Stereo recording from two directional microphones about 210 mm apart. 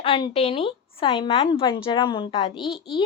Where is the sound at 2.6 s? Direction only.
Centre (ahead or behind).